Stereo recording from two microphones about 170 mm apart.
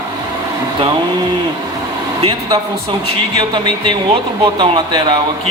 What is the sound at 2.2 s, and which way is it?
Speech, 30° right (ahead or behind).